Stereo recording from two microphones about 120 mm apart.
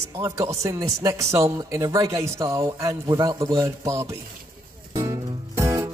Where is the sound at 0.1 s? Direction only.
25° right (ahead or behind).